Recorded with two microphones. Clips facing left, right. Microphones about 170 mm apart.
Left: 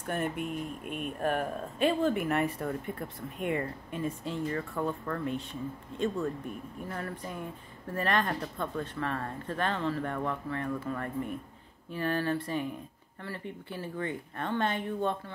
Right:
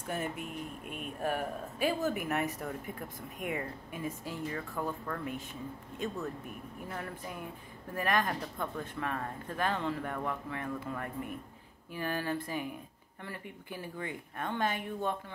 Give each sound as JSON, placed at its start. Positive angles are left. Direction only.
{"t": 0.2, "sound": "speech", "side_deg": 60}
{"t": 1.2, "sound": "speech", "side_deg": -10}
{"t": 7.9, "sound": "speech", "side_deg": -10}